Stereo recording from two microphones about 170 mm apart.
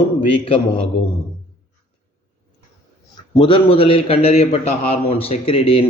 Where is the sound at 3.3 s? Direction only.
30° left (ahead or behind).